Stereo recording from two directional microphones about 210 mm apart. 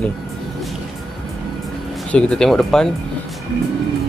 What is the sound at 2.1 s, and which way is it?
Speech, 5° left (ahead or behind).